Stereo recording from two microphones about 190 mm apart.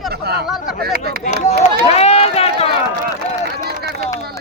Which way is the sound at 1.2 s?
35° left (ahead or behind).